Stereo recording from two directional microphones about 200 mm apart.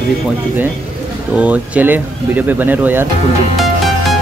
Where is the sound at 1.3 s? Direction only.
5° right (ahead or behind).